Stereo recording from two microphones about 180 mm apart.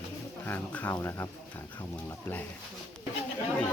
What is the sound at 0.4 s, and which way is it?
Speech, 10° left (ahead or behind).